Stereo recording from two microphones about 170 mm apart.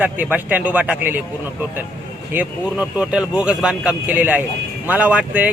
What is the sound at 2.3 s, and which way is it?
A man's voice, 5° right (ahead or behind).